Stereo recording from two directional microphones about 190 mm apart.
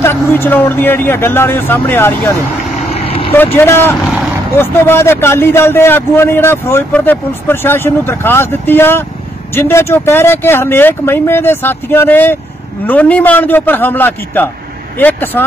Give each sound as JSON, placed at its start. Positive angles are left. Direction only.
{"t": 0.0, "sound": "a man's voice", "side_deg": 10}
{"t": 2.9, "sound": "vehicle", "side_deg": 30}
{"t": 3.5, "sound": "a man's voice", "side_deg": 10}